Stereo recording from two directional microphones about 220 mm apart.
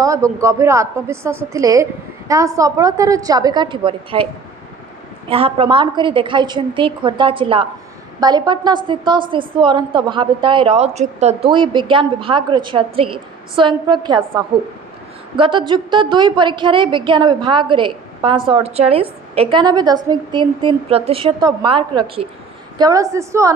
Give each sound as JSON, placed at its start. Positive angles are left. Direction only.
{"t": 0.0, "sound": "a woman's voice", "side_deg": -15}
{"t": 5.3, "sound": "a woman's voice", "side_deg": -25}
{"t": 11.5, "sound": "a woman's voice", "side_deg": -20}